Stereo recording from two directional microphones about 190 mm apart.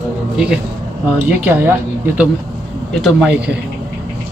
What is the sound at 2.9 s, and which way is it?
Speech, centre (ahead or behind).